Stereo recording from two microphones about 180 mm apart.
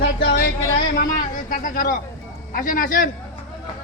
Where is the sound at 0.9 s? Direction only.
50° left (ahead or behind).